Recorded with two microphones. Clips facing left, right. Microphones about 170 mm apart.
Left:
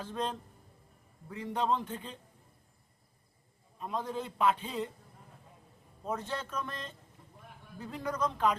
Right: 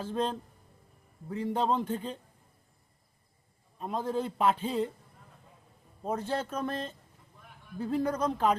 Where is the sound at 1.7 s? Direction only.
45° right (ahead or behind).